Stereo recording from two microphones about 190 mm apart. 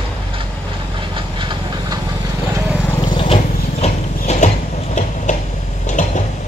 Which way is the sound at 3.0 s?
30° left (ahead or behind).